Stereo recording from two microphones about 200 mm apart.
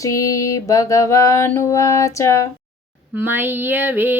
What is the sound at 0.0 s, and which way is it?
Music, 15° left (ahead or behind).